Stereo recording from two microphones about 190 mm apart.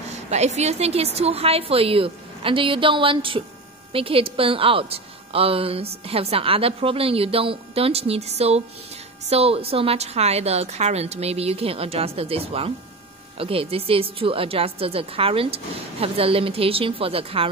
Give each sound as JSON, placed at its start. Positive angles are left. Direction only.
{"t": 0.1, "sound": "a woman's voice", "side_deg": -35}